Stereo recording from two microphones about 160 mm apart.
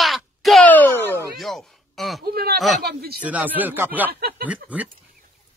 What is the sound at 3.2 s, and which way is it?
Speech, 10° right (ahead or behind).